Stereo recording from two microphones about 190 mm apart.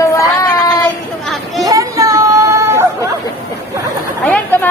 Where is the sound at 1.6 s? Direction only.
15° right (ahead or behind).